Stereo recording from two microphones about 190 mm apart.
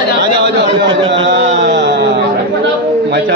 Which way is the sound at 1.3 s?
65° right (ahead or behind).